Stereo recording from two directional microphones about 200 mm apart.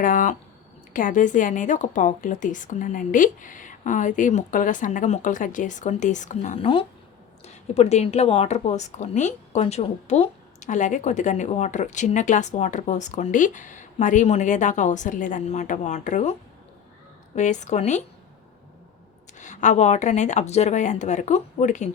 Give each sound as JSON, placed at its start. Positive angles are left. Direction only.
{"t": 0.0, "sound": "a woman's voice", "side_deg": 40}
{"t": 17.3, "sound": "a woman's voice", "side_deg": 35}
{"t": 19.4, "sound": "a woman's voice", "side_deg": 40}